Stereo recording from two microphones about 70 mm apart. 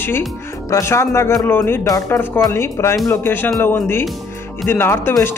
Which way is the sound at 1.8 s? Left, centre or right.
Left.